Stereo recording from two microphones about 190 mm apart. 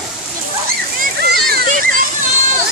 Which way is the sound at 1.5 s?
45° right (ahead or behind).